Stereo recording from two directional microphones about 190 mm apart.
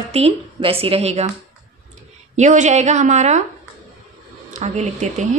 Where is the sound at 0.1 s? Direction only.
30° right (ahead or behind).